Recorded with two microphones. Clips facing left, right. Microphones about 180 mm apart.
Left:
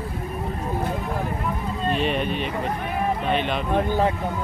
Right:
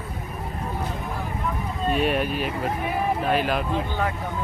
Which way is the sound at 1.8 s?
5° right (ahead or behind).